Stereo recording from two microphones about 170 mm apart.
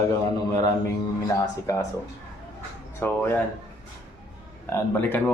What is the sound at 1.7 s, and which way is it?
Speech, 20° left (ahead or behind).